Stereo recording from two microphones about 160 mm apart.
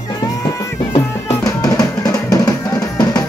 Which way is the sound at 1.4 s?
20° left (ahead or behind).